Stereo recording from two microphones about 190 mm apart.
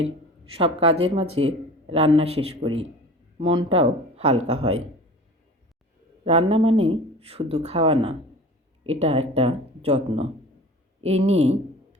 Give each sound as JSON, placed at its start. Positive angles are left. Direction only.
{"t": 0.5, "sound": "speech", "side_deg": -30}
{"t": 6.2, "sound": "speech", "side_deg": -30}